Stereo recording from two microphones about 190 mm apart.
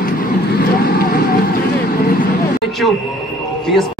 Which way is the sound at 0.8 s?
50° left (ahead or behind).